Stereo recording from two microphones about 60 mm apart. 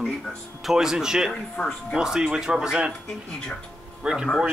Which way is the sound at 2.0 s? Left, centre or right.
Centre.